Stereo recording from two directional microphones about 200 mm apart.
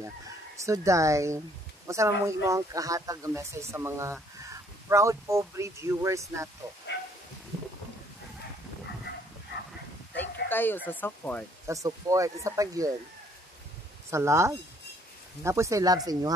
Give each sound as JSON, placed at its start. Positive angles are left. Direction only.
{"t": 0.6, "sound": "speech", "side_deg": -15}
{"t": 10.1, "sound": "bow-wow", "side_deg": 10}
{"t": 10.9, "sound": "speech", "side_deg": 10}
{"t": 11.6, "sound": "speech", "side_deg": -15}
{"t": 14.1, "sound": "speech", "side_deg": -15}